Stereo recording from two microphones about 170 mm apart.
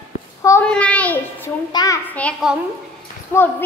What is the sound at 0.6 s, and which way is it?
Child singing, 5° left (ahead or behind).